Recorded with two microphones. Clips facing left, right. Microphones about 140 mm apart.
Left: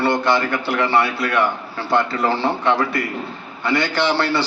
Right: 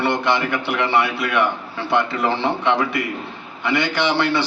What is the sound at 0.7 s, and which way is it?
A man's voice, centre (ahead or behind).